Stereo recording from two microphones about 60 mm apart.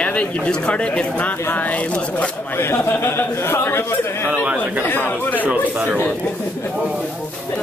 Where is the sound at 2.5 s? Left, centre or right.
Left.